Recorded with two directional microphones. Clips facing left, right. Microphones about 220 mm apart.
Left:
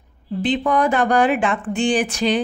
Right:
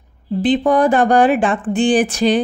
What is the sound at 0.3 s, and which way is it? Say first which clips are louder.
A woman's voice: right 5 dB; 35° right (ahead or behind).